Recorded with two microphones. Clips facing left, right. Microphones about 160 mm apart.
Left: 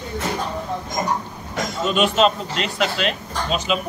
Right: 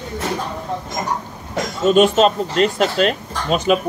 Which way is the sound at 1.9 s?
40° right (ahead or behind).